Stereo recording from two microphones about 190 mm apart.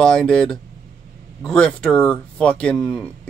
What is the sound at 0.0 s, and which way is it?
Speech, 5° left (ahead or behind).